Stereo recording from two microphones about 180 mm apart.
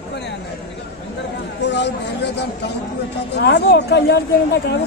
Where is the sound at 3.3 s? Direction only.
70° left (ahead or behind).